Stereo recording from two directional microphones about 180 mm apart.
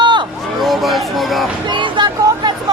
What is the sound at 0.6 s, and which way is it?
Speech, centre (ahead or behind).